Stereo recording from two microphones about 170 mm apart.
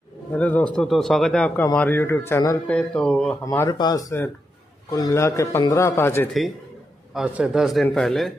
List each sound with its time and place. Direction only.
0.3 s a man's voice: 10° left (ahead or behind)
3.4 s speech: 20° left (ahead or behind)
7.2 s a man's voice: 5° right (ahead or behind)